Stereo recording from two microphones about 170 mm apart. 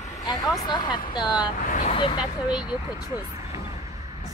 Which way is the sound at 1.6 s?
50° left (ahead or behind).